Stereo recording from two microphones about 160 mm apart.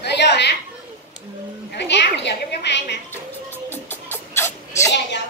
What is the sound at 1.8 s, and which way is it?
A child's voice, 90° left.